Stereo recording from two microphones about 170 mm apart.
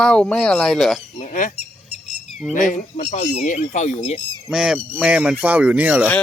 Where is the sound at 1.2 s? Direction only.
50° left (ahead or behind).